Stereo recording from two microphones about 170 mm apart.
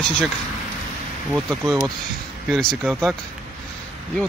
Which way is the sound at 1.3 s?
5° right (ahead or behind).